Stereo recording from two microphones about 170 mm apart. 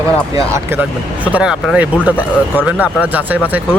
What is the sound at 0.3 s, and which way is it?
Speech, 15° right (ahead or behind).